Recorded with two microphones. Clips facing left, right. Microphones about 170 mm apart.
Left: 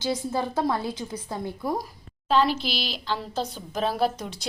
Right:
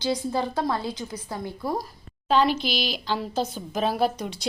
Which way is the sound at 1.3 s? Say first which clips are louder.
Left 1 dB; 20° left (ahead or behind).